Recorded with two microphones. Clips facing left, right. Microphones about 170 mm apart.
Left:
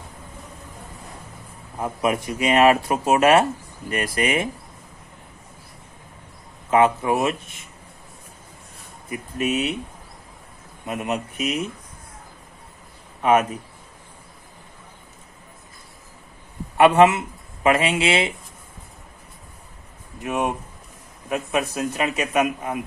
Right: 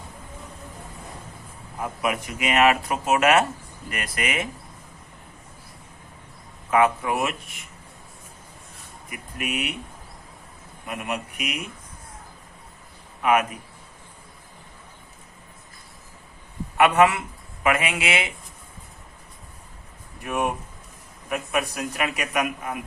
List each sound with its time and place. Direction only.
1.8 s speech: 30° left (ahead or behind)
6.7 s speech: 25° left (ahead or behind)
9.0 s speech: 30° left (ahead or behind)
10.8 s speech: 25° left (ahead or behind)
13.2 s a man's voice: 30° left (ahead or behind)
16.7 s speech: 30° left (ahead or behind)
20.2 s speech: 20° left (ahead or behind)